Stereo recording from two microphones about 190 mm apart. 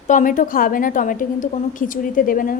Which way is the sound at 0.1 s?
45° left (ahead or behind).